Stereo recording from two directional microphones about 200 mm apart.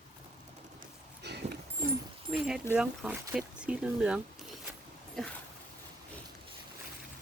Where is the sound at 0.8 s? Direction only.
55° right (ahead or behind).